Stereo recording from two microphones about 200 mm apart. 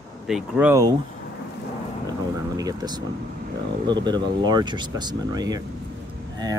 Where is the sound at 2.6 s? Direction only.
20° right (ahead or behind).